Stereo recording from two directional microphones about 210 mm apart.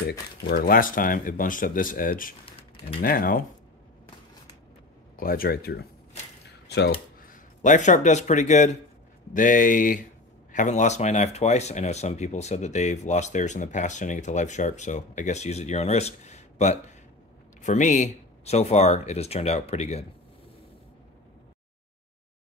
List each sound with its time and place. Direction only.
0.5 s speech: 45° left (ahead or behind)
5.1 s speech: 45° left (ahead or behind)
7.6 s speech: 35° left (ahead or behind)